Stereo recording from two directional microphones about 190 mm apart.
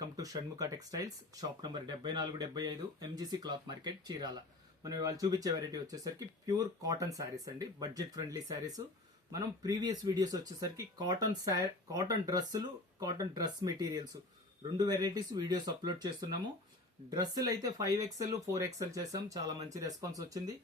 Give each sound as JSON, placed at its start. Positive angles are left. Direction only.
{"t": 0.2, "sound": "speech", "side_deg": -20}